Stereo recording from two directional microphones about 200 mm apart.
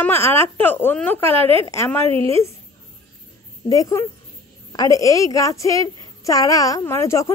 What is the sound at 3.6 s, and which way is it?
A woman's voice, 15° left (ahead or behind).